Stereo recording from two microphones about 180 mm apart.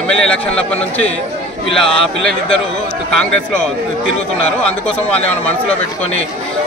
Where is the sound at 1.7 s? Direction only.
30° left (ahead or behind).